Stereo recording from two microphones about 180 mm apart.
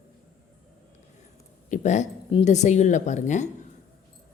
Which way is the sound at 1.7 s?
40° left (ahead or behind).